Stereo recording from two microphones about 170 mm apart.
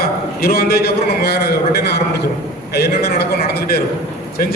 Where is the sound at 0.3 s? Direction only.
65° left (ahead or behind).